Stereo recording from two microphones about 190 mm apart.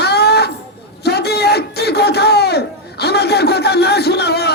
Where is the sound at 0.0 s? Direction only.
60° left (ahead or behind).